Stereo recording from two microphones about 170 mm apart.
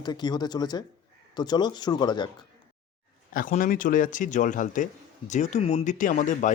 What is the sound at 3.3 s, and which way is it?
Speech, 55° left (ahead or behind).